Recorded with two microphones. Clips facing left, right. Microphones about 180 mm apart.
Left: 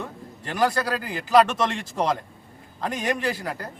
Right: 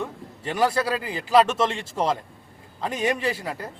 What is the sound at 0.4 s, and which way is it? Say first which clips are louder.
Speech: right 1 dB; 5° right (ahead or behind).